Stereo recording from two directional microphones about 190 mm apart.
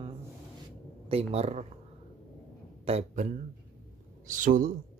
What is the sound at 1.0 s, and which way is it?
Speech, 30° right (ahead or behind).